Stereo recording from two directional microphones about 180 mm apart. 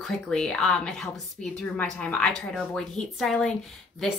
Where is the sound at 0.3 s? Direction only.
5° left (ahead or behind).